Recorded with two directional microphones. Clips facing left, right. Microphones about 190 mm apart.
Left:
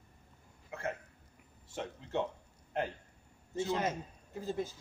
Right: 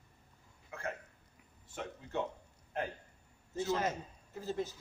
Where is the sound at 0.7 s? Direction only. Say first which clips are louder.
Left 3 dB; 20° left (ahead or behind).